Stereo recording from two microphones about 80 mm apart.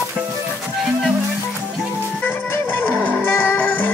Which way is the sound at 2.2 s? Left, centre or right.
Left.